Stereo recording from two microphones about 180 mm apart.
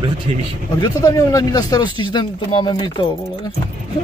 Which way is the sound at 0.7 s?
20° left (ahead or behind).